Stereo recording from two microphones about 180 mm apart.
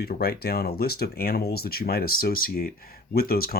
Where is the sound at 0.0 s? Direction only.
60° left (ahead or behind).